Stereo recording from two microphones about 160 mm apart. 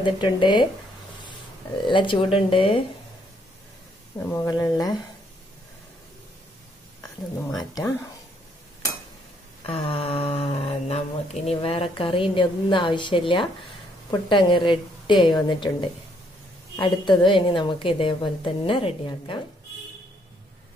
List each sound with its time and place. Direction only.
0.0 s a woman's voice: 30° left (ahead or behind)
1.9 s speech: 30° left (ahead or behind)
4.3 s a woman's voice: 20° left (ahead or behind)
9.6 s a woman's voice: 35° left (ahead or behind)